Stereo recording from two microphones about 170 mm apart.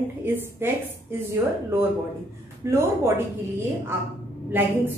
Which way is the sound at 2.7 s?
15° right (ahead or behind).